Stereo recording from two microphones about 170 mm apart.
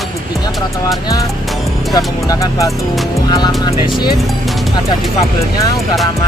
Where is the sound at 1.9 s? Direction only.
20° left (ahead or behind).